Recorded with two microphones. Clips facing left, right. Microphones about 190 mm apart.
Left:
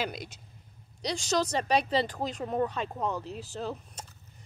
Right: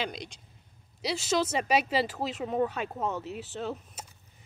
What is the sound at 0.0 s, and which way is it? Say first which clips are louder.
Speech: left 1 dB; 5° left (ahead or behind).